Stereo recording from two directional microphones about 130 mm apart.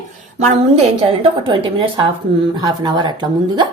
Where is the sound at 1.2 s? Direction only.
40° right (ahead or behind).